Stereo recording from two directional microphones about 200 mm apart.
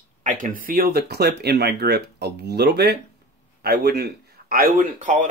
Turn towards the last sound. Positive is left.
turn(degrees=-40)  # may be behind; listen again after turning